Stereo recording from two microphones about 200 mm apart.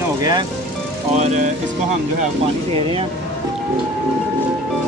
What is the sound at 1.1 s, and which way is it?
Music, 35° right (ahead or behind).